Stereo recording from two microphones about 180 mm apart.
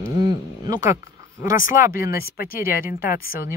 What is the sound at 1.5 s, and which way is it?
Speech, 50° left (ahead or behind).